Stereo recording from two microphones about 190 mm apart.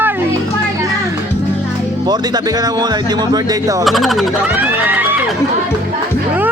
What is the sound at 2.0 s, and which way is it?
Speech, 20° right (ahead or behind).